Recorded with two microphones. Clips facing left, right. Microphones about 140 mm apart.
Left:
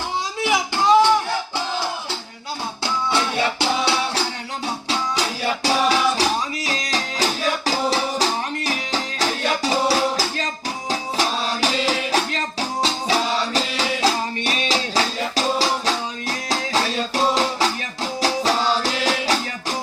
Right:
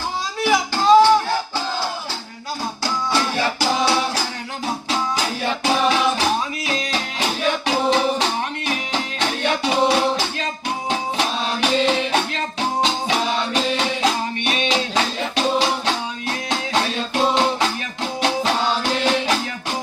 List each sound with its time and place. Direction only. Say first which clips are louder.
0.3 s music: right 3 dB; 20° left (ahead or behind)
2.8 s music: even; 25° left (ahead or behind)